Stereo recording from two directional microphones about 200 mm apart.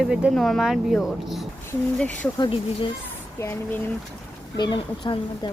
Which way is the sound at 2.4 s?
25° left (ahead or behind).